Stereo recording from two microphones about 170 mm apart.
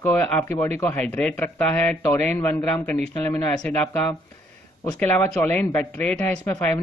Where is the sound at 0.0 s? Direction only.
15° left (ahead or behind).